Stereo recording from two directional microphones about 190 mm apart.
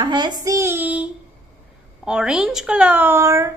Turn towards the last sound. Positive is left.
turn(degrees=-15)  # may be behind; listen again after turning